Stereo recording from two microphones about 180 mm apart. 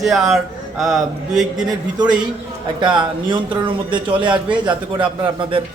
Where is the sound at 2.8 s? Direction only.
25° right (ahead or behind).